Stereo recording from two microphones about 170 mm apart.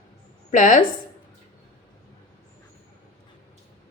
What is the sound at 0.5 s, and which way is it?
Speech, 50° left (ahead or behind).